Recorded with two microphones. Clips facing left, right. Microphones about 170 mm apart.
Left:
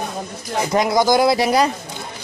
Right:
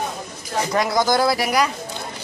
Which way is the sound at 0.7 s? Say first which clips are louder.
Left 4 dB; 20° left (ahead or behind).